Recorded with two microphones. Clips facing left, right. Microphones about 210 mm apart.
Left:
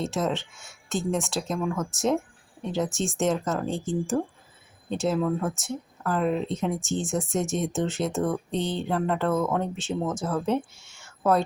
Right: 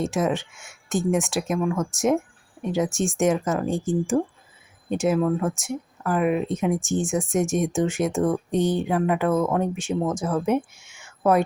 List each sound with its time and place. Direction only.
0.0 s speech: 15° right (ahead or behind)
1.6 s speech: centre (ahead or behind)
2.6 s speech: 15° right (ahead or behind)
5.2 s speech: centre (ahead or behind)
5.5 s speech: 15° right (ahead or behind)